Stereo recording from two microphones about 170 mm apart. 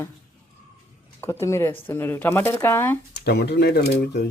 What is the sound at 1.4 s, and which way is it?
Speech, 15° left (ahead or behind).